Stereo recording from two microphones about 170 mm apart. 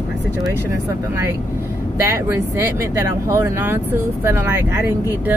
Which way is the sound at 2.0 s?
15° right (ahead or behind).